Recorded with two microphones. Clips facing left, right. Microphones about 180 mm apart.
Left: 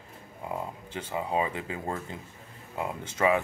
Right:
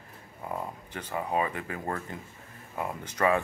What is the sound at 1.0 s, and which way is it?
Speech, 15° left (ahead or behind).